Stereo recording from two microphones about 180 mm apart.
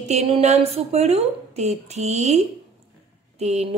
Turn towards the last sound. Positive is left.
turn(degrees=-35)  # may be behind; listen again after turning